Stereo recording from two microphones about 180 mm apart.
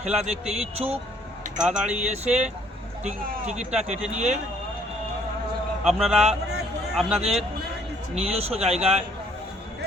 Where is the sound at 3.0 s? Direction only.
40° right (ahead or behind).